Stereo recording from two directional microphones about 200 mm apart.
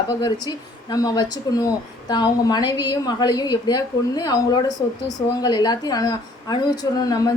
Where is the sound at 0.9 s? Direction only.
20° left (ahead or behind).